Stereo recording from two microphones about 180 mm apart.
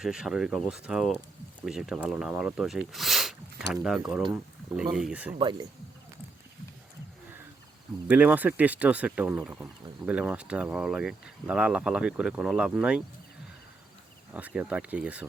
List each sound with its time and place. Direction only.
0.0 s speech: 5° right (ahead or behind)
5.4 s speech: 25° right (ahead or behind)
8.0 s speech: 10° right (ahead or behind)
14.3 s speech: 10° right (ahead or behind)